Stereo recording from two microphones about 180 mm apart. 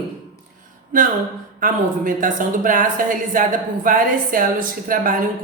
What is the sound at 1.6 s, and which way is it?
Speech, 50° right (ahead or behind).